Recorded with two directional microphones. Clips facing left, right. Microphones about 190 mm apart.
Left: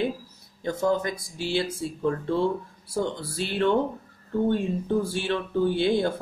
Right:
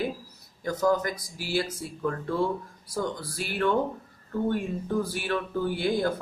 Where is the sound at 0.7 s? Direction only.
25° left (ahead or behind).